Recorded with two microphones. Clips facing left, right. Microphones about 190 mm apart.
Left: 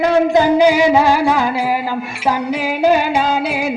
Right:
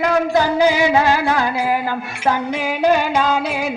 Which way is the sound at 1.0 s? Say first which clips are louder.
Left 3 dB; 10° left (ahead or behind).